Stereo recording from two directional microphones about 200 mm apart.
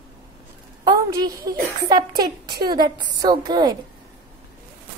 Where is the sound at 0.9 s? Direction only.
20° right (ahead or behind).